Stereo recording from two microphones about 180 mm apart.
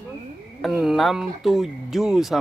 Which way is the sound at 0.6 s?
Centre (ahead or behind).